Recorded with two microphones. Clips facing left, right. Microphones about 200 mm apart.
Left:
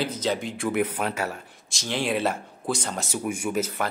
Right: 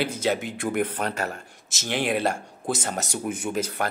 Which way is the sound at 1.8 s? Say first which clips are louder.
Right 1 dB; 60° right (ahead or behind).